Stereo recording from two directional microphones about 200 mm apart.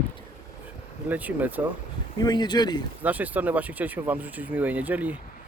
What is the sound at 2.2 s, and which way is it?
Speech, 20° left (ahead or behind).